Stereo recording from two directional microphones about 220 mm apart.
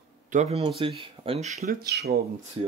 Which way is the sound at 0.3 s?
30° right (ahead or behind).